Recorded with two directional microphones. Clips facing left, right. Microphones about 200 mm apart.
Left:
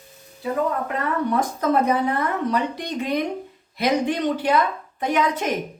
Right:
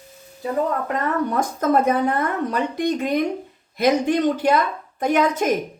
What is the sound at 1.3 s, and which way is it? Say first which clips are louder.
A woman's voice: right 1 dB; 45° right (ahead or behind).